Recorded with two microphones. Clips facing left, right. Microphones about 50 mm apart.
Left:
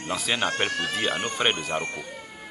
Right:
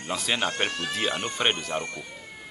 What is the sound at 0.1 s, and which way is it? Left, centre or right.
Speech, centre.